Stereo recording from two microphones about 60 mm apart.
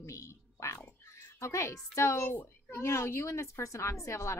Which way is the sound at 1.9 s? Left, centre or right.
Left.